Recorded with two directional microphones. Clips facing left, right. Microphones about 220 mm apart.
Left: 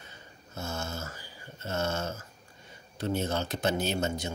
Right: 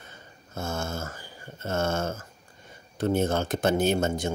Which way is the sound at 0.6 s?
50° right (ahead or behind).